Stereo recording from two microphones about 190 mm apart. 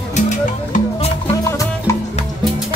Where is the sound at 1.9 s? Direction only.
15° left (ahead or behind).